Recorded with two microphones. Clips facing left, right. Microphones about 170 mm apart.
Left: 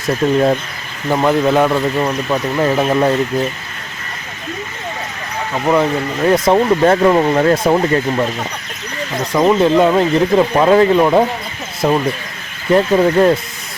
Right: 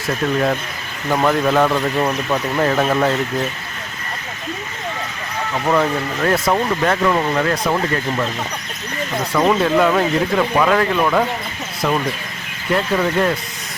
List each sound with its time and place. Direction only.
0.2 s speech: 15° left (ahead or behind)
5.5 s speech: 15° left (ahead or behind)
9.3 s speech: 10° left (ahead or behind)
9.6 s speech: 20° left (ahead or behind)